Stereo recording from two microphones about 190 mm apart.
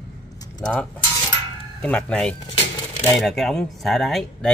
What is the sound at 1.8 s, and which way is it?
Speech, 5° left (ahead or behind).